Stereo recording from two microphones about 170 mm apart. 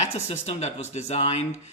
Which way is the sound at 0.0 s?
40° left (ahead or behind).